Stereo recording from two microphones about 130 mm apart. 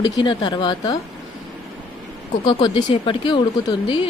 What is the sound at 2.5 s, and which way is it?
Speech, 40° left (ahead or behind).